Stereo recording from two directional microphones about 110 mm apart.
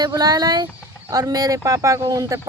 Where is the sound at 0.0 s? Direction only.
35° right (ahead or behind).